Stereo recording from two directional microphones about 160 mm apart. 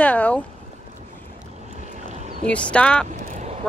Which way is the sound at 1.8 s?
50° right (ahead or behind).